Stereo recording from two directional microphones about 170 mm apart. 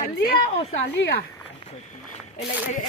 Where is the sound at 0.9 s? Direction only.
90° left.